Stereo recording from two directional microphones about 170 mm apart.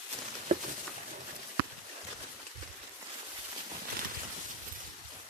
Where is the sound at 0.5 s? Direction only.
45° right (ahead or behind).